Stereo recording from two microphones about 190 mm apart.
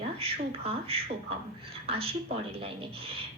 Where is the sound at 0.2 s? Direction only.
30° right (ahead or behind).